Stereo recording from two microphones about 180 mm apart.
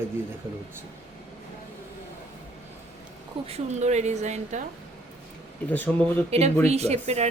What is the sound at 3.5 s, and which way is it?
A woman's voice, 35° right (ahead or behind).